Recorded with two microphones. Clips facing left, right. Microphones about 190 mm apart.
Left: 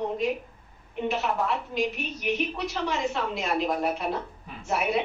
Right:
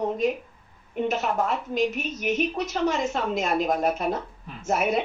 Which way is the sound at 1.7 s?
45° right (ahead or behind).